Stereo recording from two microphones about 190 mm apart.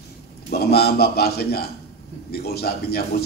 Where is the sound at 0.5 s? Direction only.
55° left (ahead or behind).